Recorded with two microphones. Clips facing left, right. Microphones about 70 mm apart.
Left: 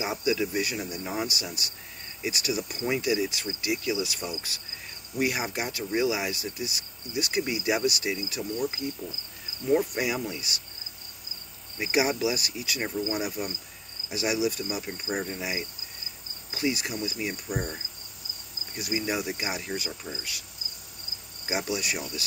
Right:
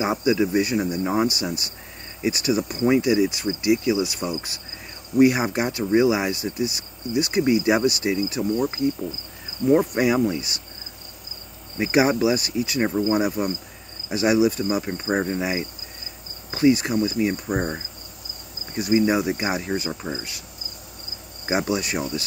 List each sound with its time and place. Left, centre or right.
0.0 s speech: right
9.8 s speech: right
11.8 s speech: right
17.6 s cricket: right
18.9 s speech: right
21.5 s speech: right